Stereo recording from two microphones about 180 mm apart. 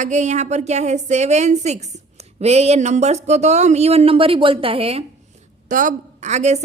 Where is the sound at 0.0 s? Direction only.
40° right (ahead or behind).